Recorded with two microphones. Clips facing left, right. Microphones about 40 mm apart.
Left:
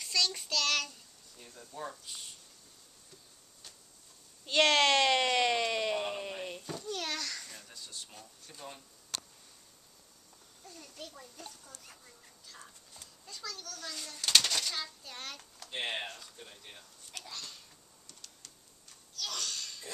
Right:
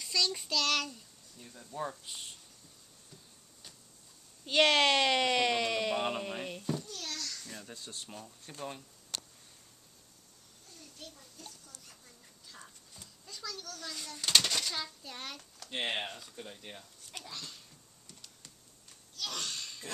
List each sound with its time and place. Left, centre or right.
0.0 s speech: centre
4.5 s speech: centre
5.9 s a sound: centre
6.5 s babbling: centre
6.9 s a sound: left
7.7 s speech: right
8.5 s speech: right
11.0 s a child's voice: left
12.4 s speech: centre
15.7 s speech: centre
19.1 s a sound: right